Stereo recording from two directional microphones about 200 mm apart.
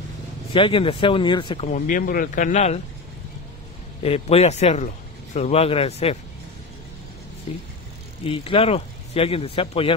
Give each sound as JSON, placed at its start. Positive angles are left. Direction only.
{"t": 0.5, "sound": "speech", "side_deg": 25}
{"t": 1.7, "sound": "a man's voice", "side_deg": 45}
{"t": 4.0, "sound": "a man's voice", "side_deg": 30}
{"t": 8.3, "sound": "speech", "side_deg": 30}